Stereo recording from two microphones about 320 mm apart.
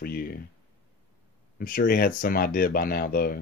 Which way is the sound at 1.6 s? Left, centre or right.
Left.